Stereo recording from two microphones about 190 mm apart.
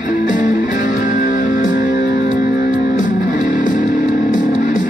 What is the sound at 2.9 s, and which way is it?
Music, 40° left (ahead or behind).